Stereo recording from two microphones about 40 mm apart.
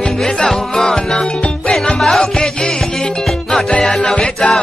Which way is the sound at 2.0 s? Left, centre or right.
Centre.